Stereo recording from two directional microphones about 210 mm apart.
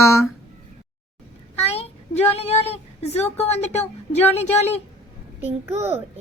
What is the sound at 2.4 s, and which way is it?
A woman's voice, 30° left (ahead or behind).